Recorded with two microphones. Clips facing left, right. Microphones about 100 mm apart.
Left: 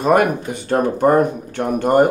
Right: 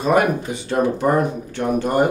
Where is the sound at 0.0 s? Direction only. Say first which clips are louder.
Left 2 dB; 55° left (ahead or behind).